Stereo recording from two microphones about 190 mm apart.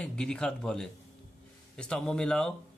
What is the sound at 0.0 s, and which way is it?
Speech, 5° left (ahead or behind).